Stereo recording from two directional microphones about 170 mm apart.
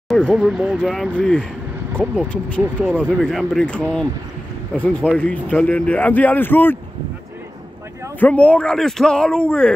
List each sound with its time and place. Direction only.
0.1 s a man's voice: centre (ahead or behind)
8.2 s a man's voice: 10° left (ahead or behind)